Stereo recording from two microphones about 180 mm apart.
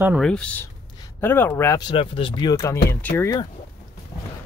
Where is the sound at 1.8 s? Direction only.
30° left (ahead or behind); by 3.4 s 10° left (ahead or behind).